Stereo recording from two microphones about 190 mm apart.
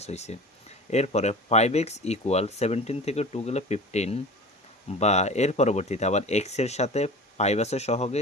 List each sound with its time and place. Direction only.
0.0 s speech: 35° left (ahead or behind)